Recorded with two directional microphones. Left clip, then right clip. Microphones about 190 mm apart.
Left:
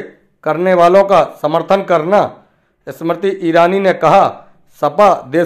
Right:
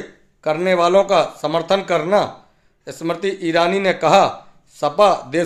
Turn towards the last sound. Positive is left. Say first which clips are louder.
# left 4 dB
turn(degrees=0)  # may be behind; listen again after turning